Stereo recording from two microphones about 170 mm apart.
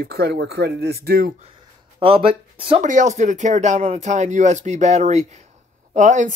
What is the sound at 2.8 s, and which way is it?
Speech, 45° right (ahead or behind).